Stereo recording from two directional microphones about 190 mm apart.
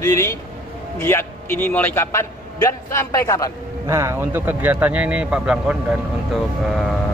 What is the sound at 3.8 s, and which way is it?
Speech, 15° right (ahead or behind).